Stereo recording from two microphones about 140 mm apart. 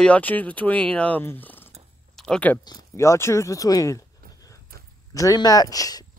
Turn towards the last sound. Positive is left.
turn(degrees=25)  # may be behind; listen again after turning